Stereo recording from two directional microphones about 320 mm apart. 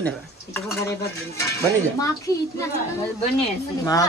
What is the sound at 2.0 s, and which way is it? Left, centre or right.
Speech, centre.